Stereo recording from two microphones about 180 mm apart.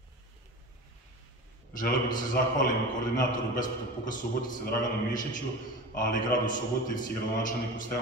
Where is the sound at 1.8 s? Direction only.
50° left (ahead or behind).